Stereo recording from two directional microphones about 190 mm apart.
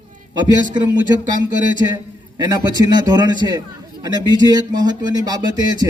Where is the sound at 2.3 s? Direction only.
20° right (ahead or behind).